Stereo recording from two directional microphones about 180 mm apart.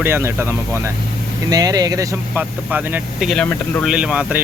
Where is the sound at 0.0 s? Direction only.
15° right (ahead or behind).